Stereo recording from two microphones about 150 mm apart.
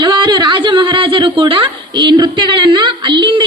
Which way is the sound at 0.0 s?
30° right (ahead or behind).